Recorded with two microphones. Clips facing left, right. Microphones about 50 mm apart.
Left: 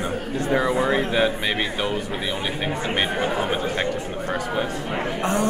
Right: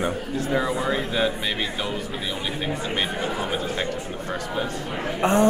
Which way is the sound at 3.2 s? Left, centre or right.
Left.